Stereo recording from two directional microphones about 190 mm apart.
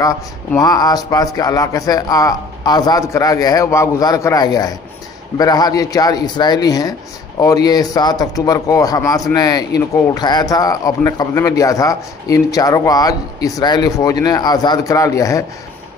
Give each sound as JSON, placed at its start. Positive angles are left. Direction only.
{"t": 0.0, "sound": "a man's voice", "side_deg": 20}